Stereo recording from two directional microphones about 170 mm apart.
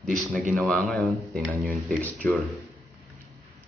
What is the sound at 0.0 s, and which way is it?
Speech, centre (ahead or behind).